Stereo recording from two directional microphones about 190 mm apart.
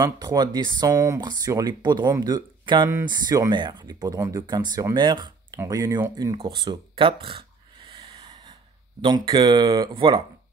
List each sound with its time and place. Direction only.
0.0 s speech: 20° right (ahead or behind)
6.3 s a sound: 25° right (ahead or behind)
9.0 s speech: 25° right (ahead or behind)